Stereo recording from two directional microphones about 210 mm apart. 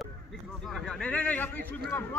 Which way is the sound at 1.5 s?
45° right (ahead or behind).